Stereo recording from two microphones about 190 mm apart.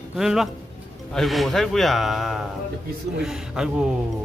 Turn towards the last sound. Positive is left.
turn(degrees=0)  # may be behind; listen again after turning